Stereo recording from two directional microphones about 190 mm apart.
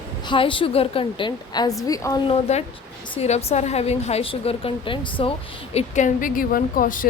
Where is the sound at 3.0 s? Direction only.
30° left (ahead or behind).